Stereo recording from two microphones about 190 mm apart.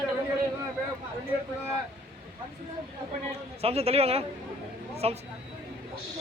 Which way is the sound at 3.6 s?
30° right (ahead or behind).